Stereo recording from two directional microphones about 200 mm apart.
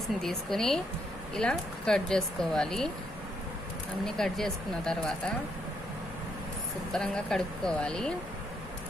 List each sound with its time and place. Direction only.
0.2 s speech: centre (ahead or behind)
4.0 s speech: centre (ahead or behind)
6.9 s speech: 5° left (ahead or behind)